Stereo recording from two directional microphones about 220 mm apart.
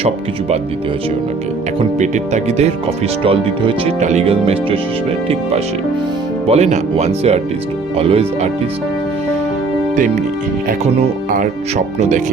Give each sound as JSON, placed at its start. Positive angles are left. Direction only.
{"t": 0.0, "sound": "speech", "side_deg": -30}
{"t": 2.0, "sound": "speech", "side_deg": -30}
{"t": 10.7, "sound": "speech", "side_deg": -35}